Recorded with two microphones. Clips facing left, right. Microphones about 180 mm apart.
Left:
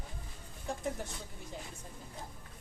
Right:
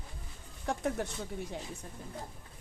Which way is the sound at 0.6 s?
70° right (ahead or behind).